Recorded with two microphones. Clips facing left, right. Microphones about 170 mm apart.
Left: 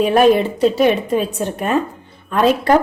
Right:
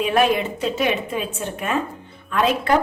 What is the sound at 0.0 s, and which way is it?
Speech, 35° left (ahead or behind).